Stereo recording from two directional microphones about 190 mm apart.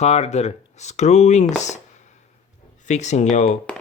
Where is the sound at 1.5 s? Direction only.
40° left (ahead or behind).